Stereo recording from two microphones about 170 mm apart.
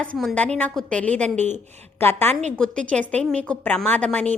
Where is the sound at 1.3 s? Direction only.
45° right (ahead or behind).